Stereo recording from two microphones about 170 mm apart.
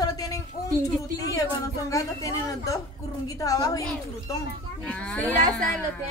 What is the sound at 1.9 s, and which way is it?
Speech, 20° left (ahead or behind).